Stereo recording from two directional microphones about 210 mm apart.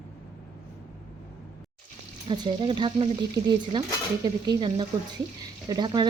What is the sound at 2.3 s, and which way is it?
Speech, 20° right (ahead or behind).